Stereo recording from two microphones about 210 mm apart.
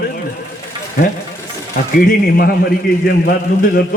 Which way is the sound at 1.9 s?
45° left (ahead or behind).